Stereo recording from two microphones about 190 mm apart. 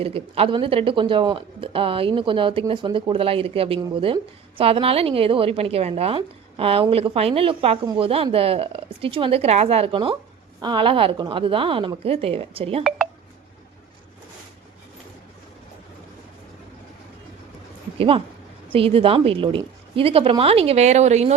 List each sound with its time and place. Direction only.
0.0 s a woman's voice: 30° right (ahead or behind)
17.9 s a woman's voice: 30° right (ahead or behind)